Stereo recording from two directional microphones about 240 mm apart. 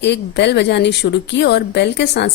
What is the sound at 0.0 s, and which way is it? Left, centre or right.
Speech, left.